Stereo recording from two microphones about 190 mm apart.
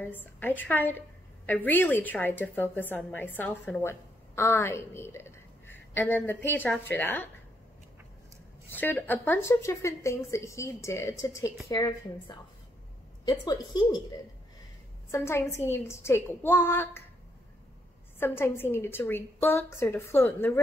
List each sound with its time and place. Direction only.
0.0 s a woman's voice: 10° left (ahead or behind)
8.6 s a woman's voice: 10° left (ahead or behind)
15.0 s a woman's voice: 15° left (ahead or behind)
18.2 s a woman's voice: 10° left (ahead or behind)